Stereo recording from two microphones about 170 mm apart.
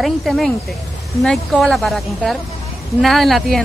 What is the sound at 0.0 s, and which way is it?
Speech, centre (ahead or behind).